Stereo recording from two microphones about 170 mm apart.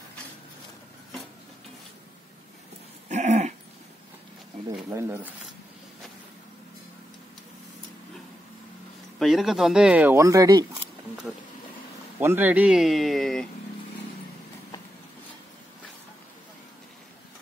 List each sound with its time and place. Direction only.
3.1 s dog: 45° right (ahead or behind)
4.8 s speech: 15° right (ahead or behind)
9.2 s speech: centre (ahead or behind); by 10.6 s 20° right (ahead or behind)
12.2 s speech: 15° right (ahead or behind)